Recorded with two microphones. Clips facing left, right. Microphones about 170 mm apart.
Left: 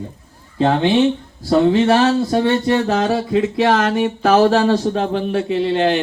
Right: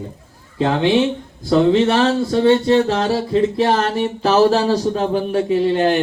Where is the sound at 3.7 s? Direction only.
35° right (ahead or behind).